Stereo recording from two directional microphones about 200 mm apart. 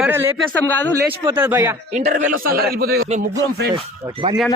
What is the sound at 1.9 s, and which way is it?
Speech, 35° right (ahead or behind).